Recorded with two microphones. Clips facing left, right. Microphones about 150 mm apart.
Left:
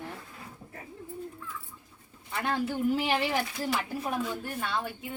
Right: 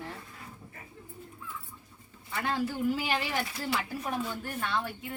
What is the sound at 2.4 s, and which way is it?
A woman's voice, 25° left (ahead or behind).